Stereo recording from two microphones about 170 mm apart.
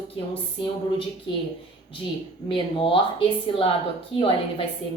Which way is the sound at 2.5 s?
30° left (ahead or behind).